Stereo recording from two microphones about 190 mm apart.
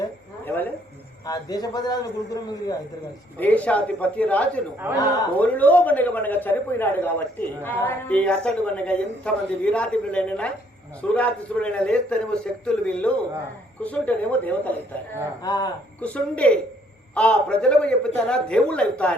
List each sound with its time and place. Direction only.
0.0 s a sound: 10° left (ahead or behind)
1.2 s a man's voice: 20° left (ahead or behind)
3.3 s a man's voice: 10° left (ahead or behind)
15.4 s a man's voice: 20° left (ahead or behind)
16.0 s a man's voice: 5° left (ahead or behind)